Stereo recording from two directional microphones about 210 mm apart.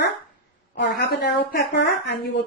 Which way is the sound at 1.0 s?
50° left (ahead or behind).